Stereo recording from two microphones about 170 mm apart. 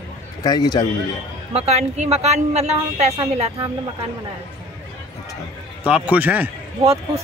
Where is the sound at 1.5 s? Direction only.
40° right (ahead or behind).